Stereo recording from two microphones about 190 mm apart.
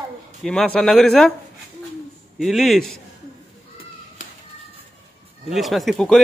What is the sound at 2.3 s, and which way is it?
Speech, centre (ahead or behind).